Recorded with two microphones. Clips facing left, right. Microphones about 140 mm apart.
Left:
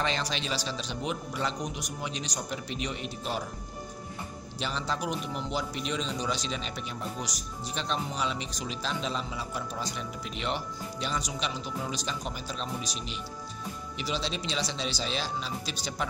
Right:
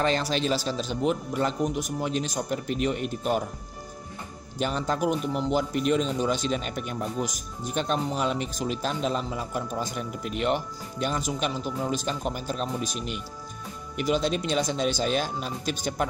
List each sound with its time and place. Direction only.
0.0 s a man's voice: 40° right (ahead or behind)
4.6 s speech: 45° right (ahead or behind)